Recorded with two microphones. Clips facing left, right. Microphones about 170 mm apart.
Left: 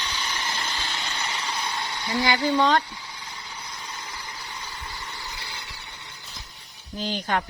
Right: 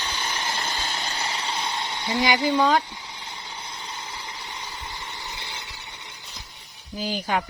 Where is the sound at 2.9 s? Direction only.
20° right (ahead or behind).